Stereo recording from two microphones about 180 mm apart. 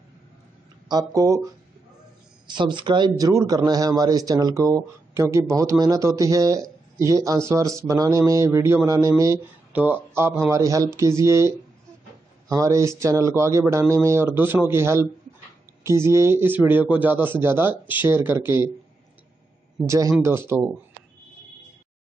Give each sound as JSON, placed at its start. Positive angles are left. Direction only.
{"t": 0.8, "sound": "a man's voice", "side_deg": -20}
{"t": 19.9, "sound": "a man's voice", "side_deg": -15}